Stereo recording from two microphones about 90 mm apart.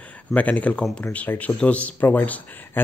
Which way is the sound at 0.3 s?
15° left (ahead or behind).